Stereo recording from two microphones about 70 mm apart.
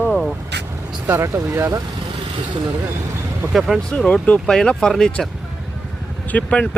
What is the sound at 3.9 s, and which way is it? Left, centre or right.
Speech, centre.